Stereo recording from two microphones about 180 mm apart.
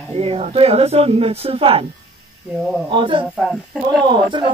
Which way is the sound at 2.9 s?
25° right (ahead or behind).